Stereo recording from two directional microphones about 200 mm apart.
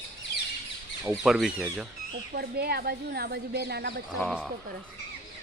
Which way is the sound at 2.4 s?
50° right (ahead or behind).